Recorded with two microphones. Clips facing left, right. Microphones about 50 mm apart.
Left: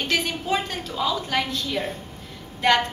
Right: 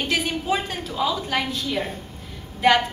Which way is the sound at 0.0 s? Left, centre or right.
Centre.